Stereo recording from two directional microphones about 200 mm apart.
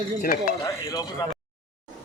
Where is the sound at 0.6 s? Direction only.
15° left (ahead or behind).